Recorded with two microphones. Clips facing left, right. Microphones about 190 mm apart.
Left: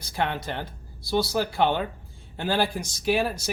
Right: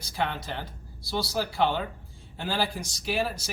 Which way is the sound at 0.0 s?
55° left (ahead or behind).